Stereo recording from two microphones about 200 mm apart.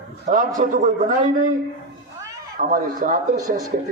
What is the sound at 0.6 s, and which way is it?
Speech, 40° right (ahead or behind).